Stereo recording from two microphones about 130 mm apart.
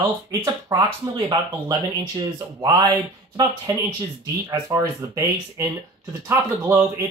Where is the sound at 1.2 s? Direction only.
40° right (ahead or behind).